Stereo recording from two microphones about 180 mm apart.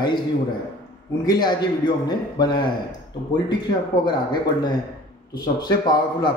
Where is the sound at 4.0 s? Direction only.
25° left (ahead or behind).